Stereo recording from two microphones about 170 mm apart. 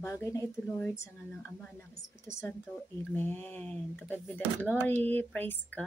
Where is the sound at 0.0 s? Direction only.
15° left (ahead or behind).